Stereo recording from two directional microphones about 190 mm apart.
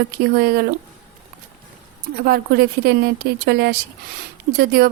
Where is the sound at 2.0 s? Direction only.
50° right (ahead or behind).